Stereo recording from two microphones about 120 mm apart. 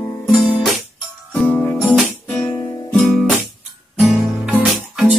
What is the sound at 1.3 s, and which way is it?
Music, 10° left (ahead or behind).